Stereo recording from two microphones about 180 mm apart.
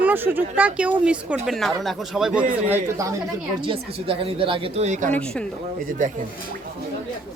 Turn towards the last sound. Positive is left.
turn(degrees=-45)  # may be behind; listen again after turning